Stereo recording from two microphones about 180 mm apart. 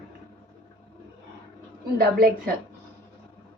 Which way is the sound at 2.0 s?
55° right (ahead or behind).